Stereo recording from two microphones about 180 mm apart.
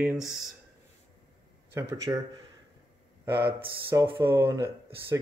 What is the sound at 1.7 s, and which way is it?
Speech, 15° right (ahead or behind).